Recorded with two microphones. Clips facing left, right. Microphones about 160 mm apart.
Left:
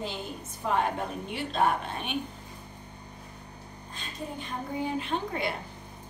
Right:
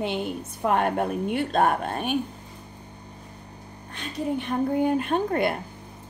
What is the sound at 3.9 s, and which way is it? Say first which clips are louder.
Speech: right 10 dB; 65° right (ahead or behind).